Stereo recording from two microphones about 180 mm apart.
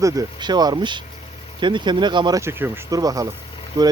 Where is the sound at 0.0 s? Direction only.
20° right (ahead or behind).